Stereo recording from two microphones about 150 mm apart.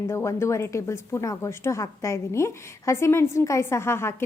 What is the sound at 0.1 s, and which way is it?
A woman's voice, 20° left (ahead or behind).